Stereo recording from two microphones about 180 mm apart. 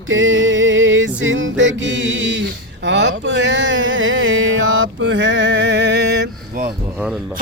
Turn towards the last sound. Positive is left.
turn(degrees=-65)  # may be behind; listen again after turning